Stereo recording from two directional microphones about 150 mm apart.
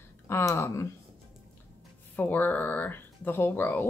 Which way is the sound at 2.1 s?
10° left (ahead or behind).